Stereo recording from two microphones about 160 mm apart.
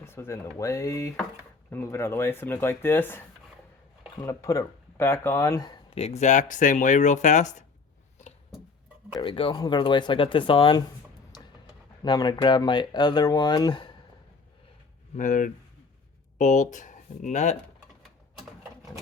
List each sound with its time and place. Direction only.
0.0 s speech: 15° left (ahead or behind); by 7.5 s 50° left (ahead or behind)
9.2 s speech: 35° left (ahead or behind)
12.0 s speech: 25° left (ahead or behind)
15.1 s speech: 50° left (ahead or behind)